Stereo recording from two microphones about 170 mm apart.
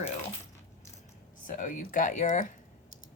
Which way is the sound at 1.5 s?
50° left (ahead or behind).